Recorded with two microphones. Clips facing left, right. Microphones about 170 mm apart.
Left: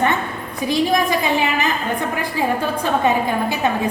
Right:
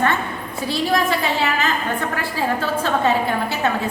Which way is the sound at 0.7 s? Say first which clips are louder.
Left 2 dB; 15° left (ahead or behind).